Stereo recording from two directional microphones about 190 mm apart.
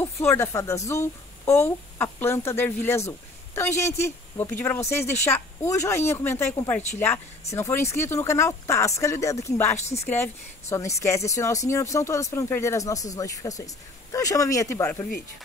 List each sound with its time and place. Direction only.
0.0 s speech: 15° left (ahead or behind)